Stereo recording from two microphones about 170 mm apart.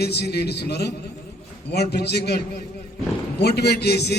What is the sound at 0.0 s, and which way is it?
A man's voice, 75° left (ahead or behind).